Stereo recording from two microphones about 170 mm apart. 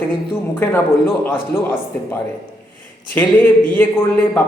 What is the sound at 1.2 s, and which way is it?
Speech, 10° left (ahead or behind).